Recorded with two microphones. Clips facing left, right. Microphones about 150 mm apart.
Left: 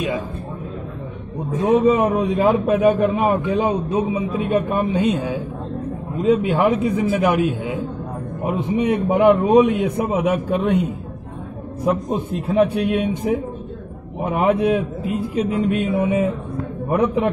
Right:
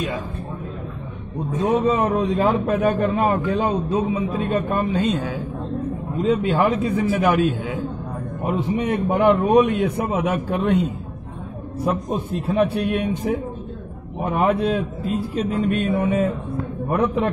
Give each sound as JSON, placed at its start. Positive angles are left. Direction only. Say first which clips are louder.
{"t": 1.9, "sound": "a man's voice", "louder": "left 3 dB", "side_deg": 15}
{"t": 11.8, "sound": "a man's voice", "louder": "left 3 dB", "side_deg": 15}